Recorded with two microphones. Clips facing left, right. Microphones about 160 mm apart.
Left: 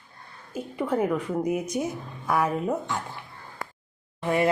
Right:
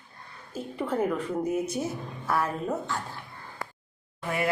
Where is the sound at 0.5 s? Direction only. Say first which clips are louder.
Left 2 dB; 10° left (ahead or behind).